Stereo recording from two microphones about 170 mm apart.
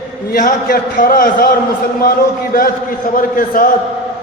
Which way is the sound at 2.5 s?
55° left (ahead or behind).